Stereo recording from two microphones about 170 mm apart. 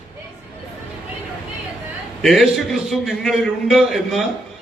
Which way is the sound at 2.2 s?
Centre (ahead or behind).